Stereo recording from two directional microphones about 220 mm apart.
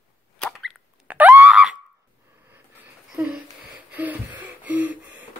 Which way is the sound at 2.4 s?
10° right (ahead or behind).